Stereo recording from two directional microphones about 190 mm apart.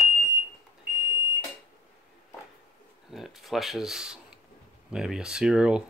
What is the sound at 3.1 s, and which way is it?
Speech, centre (ahead or behind).